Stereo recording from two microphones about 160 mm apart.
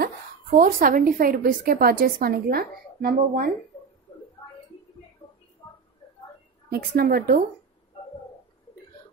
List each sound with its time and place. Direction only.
0.6 s a woman's voice: 60° right (ahead or behind)
6.7 s speech: 70° right (ahead or behind)